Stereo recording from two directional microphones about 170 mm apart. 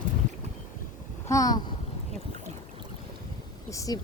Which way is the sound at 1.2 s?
20° left (ahead or behind).